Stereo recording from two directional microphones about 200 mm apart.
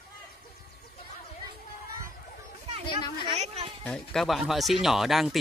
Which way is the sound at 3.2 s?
25° right (ahead or behind).